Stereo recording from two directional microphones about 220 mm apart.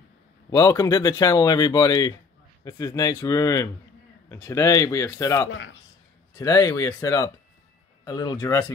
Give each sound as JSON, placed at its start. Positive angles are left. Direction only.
{"t": 0.5, "sound": "speech", "side_deg": 15}